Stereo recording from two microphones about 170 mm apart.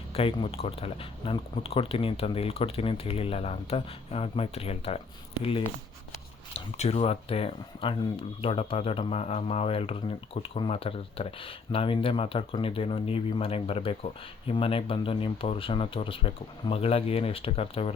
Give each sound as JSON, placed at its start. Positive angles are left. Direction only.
{"t": 0.1, "sound": "speech", "side_deg": 35}